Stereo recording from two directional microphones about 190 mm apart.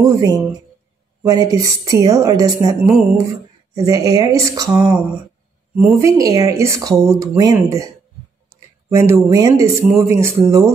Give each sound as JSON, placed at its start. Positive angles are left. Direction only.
{"t": 0.0, "sound": "a woman's voice", "side_deg": -20}
{"t": 5.9, "sound": "speech", "side_deg": -15}
{"t": 8.9, "sound": "speech", "side_deg": -15}